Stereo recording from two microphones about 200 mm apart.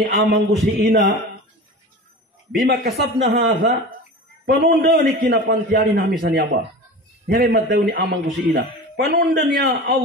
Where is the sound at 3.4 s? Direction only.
70° right (ahead or behind).